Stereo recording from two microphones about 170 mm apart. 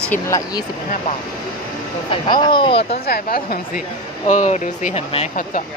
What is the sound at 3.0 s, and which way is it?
Speech, 65° left (ahead or behind).